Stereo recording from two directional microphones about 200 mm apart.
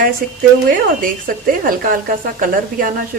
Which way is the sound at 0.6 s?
45° right (ahead or behind).